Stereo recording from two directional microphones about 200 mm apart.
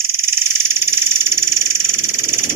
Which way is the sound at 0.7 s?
10° right (ahead or behind).